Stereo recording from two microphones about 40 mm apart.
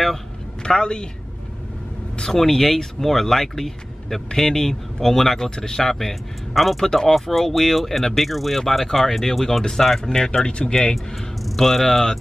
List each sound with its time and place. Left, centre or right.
0.7 s speech: left
2.1 s speech: centre
6.8 s speech: centre
11.4 s speech: centre